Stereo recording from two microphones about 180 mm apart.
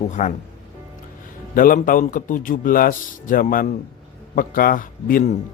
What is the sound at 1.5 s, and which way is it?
A man's voice, 50° left (ahead or behind).